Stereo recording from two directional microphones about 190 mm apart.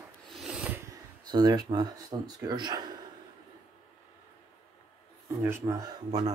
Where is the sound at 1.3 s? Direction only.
20° right (ahead or behind).